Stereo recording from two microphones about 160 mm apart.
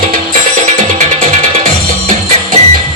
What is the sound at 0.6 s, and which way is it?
Music, 45° right (ahead or behind).